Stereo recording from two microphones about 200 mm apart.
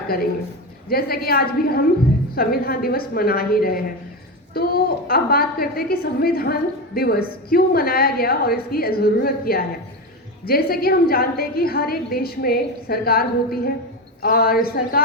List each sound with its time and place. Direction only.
0.9 s a woman's voice: 50° left (ahead or behind)